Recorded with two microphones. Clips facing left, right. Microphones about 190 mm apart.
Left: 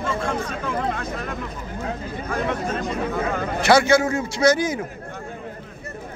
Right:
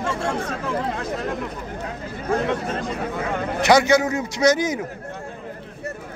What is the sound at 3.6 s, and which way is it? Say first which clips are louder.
Speech: even; 15° right (ahead or behind).